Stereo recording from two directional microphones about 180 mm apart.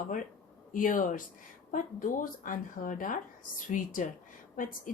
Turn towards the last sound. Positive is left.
turn(degrees=50)  # may be behind; listen again after turning